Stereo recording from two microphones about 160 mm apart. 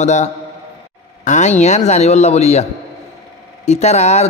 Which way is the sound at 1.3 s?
45° left (ahead or behind).